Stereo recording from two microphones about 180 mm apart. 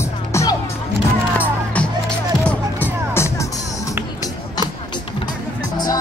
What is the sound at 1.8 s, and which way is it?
Music, 5° left (ahead or behind).